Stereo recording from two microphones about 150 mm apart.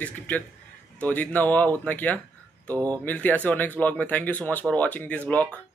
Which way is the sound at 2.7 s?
25° right (ahead or behind).